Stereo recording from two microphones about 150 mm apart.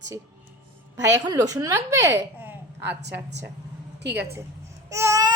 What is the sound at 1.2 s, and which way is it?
A woman's voice, 25° right (ahead or behind).